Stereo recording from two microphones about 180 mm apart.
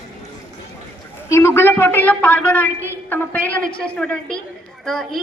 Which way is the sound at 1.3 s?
15° left (ahead or behind).